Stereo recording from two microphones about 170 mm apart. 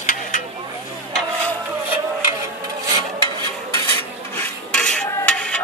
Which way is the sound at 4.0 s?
10° left (ahead or behind).